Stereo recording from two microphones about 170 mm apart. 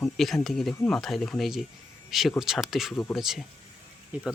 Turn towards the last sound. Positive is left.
turn(degrees=-10)  # may be behind; listen again after turning